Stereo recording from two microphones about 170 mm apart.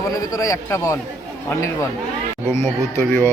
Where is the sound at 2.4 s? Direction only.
15° left (ahead or behind).